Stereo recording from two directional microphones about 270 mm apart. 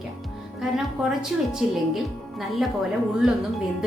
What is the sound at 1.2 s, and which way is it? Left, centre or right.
Speech, centre.